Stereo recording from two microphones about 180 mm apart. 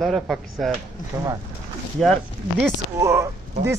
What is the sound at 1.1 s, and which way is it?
Speech, 20° right (ahead or behind).